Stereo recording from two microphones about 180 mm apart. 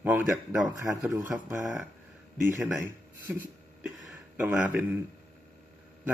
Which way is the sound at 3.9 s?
5° right (ahead or behind).